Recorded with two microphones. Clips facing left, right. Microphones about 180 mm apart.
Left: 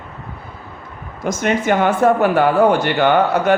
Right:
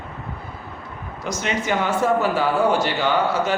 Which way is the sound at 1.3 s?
55° left (ahead or behind).